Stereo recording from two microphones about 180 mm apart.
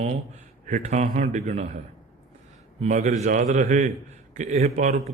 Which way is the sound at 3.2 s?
40° right (ahead or behind).